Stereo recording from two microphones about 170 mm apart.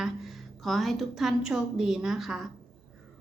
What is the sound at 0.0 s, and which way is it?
A woman's voice, centre (ahead or behind).